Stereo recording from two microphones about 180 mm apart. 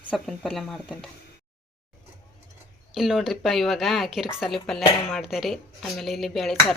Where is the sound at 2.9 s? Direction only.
Centre (ahead or behind).